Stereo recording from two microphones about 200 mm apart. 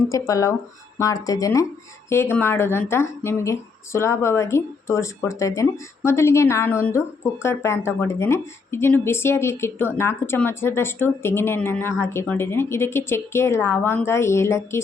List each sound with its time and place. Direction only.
0.1 s speech: 15° left (ahead or behind)